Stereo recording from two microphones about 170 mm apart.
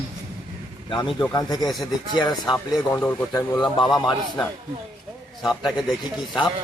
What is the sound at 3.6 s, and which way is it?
Speech, 25° left (ahead or behind).